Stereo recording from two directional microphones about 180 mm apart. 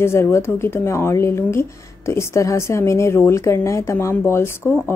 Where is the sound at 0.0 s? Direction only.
15° left (ahead or behind).